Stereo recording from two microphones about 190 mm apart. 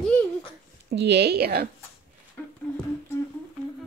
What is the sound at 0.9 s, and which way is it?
Speech, 60° right (ahead or behind).